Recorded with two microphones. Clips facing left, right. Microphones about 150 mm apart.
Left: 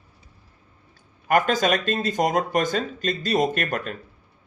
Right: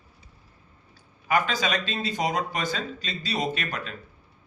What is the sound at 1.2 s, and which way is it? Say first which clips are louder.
A man's voice: left 5 dB; 50° left (ahead or behind).